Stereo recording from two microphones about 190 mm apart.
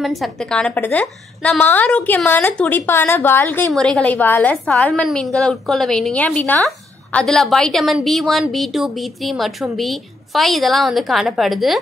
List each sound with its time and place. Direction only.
0.0 s a woman's voice: centre (ahead or behind)